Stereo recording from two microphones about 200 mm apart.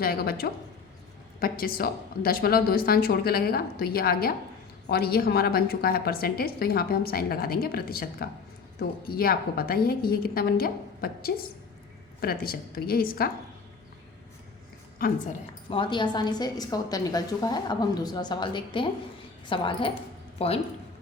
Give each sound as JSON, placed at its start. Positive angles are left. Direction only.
{"t": 0.0, "sound": "a woman's voice", "side_deg": 50}
{"t": 14.9, "sound": "a woman's voice", "side_deg": 45}
{"t": 15.7, "sound": "a woman's voice", "side_deg": 25}